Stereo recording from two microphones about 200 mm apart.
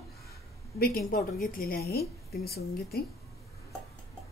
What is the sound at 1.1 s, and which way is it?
A woman's voice, 45° left (ahead or behind).